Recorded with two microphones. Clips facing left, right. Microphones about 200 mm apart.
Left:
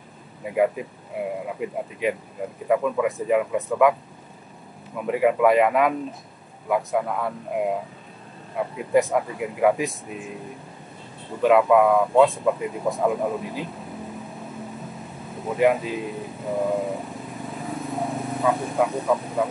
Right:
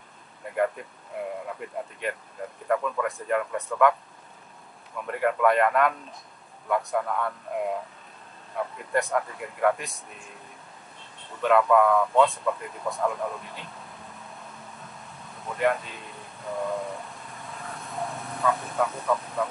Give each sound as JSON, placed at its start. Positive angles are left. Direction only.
{"t": 0.4, "sound": "speech", "side_deg": 5}
{"t": 4.9, "sound": "speech", "side_deg": 5}
{"t": 11.7, "sound": "speech", "side_deg": 10}
{"t": 13.0, "sound": "speech", "side_deg": 15}
{"t": 13.4, "sound": "speech", "side_deg": 5}
{"t": 15.4, "sound": "speech", "side_deg": 5}
{"t": 16.6, "sound": "vehicle", "side_deg": 0}
{"t": 18.5, "sound": "speech", "side_deg": 15}